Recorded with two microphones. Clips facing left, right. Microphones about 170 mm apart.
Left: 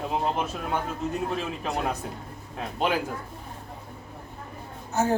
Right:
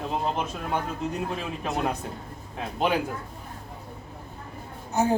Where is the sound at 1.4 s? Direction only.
Centre (ahead or behind).